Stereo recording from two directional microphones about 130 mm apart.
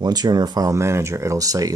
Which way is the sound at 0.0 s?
30° right (ahead or behind).